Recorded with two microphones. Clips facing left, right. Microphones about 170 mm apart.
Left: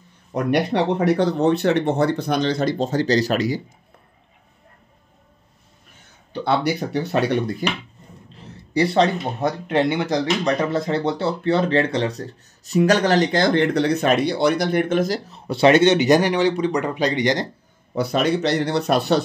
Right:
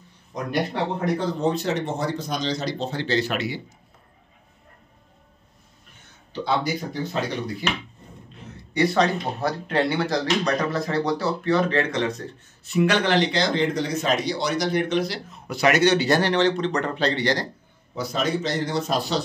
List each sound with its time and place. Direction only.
0.3 s speech: 65° left (ahead or behind); by 3.6 s 40° left (ahead or behind)
6.4 s speech: 65° left (ahead or behind)
8.7 s speech: 30° left (ahead or behind)
17.9 s speech: 65° left (ahead or behind)